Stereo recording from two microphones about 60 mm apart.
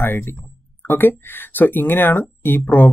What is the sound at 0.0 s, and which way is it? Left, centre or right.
Speech, left.